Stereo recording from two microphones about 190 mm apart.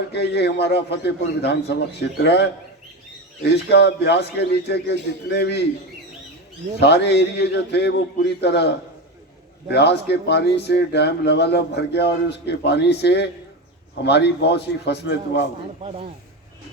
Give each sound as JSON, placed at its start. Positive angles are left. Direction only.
{"t": 0.1, "sound": "speech", "side_deg": 60}
{"t": 6.7, "sound": "speech", "side_deg": 60}
{"t": 15.8, "sound": "speech", "side_deg": -30}